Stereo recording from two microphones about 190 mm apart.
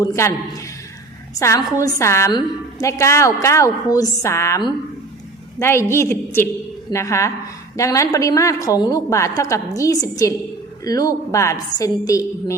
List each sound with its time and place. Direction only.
0.0 s a woman's voice: 15° left (ahead or behind)
1.4 s a woman's voice: 15° left (ahead or behind)